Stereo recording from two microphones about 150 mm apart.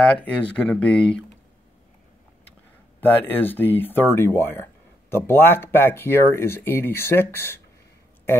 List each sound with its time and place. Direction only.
0.0 s speech: 10° left (ahead or behind)
3.0 s speech: 15° left (ahead or behind)